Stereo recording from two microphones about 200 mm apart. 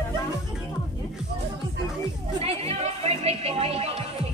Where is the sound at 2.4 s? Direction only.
30° right (ahead or behind).